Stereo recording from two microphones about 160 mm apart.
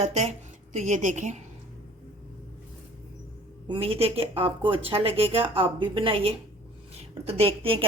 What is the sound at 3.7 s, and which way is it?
A woman's voice, 35° right (ahead or behind).